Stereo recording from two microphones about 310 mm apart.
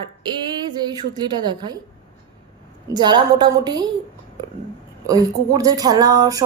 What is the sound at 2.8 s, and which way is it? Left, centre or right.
A woman's voice, centre.